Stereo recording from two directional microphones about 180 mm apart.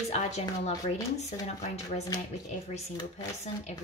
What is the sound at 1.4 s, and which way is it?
Speech, 40° left (ahead or behind).